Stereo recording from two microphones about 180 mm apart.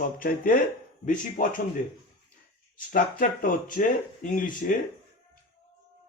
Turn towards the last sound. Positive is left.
turn(degrees=50)  # may be behind; listen again after turning